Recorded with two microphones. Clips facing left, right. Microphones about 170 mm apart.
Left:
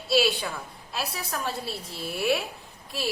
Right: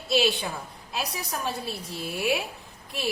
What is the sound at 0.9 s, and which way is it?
A woman's voice, 15° right (ahead or behind).